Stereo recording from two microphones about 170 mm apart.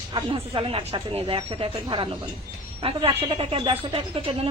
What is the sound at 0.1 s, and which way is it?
Speech, 30° right (ahead or behind).